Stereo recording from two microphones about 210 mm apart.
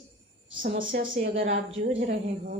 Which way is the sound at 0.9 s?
60° right (ahead or behind).